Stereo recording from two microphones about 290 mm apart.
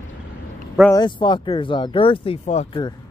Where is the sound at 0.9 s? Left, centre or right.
Centre.